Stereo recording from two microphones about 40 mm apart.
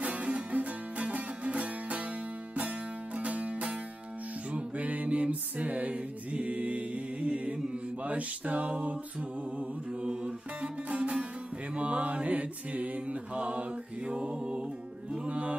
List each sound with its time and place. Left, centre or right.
0.0 s music: right
3.2 s music: right
10.0 s music: right
13.4 s mantra: right
15.2 s music: right